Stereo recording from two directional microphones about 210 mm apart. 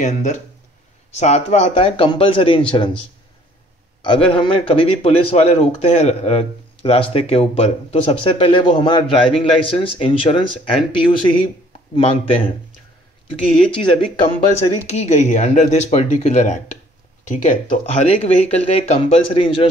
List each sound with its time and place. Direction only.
0.0 s speech: 35° left (ahead or behind)
4.0 s speech: 25° left (ahead or behind)